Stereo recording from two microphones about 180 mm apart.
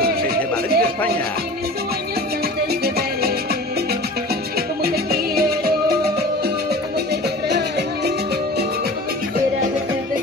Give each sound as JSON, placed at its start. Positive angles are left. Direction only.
{"t": 0.0, "sound": "a sound", "side_deg": -60}
{"t": 4.8, "sound": "music", "side_deg": -55}
{"t": 7.4, "sound": "music", "side_deg": -65}